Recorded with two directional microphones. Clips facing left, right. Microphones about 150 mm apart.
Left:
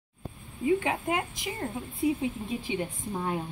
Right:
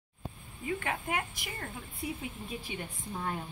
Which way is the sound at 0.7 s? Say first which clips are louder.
Left 8 dB; 20° left (ahead or behind).